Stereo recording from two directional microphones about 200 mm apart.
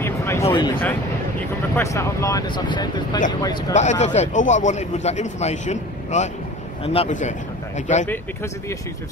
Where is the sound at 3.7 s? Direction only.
35° left (ahead or behind).